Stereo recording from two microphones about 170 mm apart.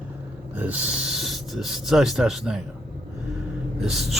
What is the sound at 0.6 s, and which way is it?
Speech, 10° right (ahead or behind).